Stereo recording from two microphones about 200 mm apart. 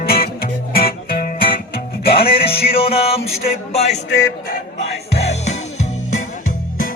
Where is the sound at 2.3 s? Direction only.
30° left (ahead or behind).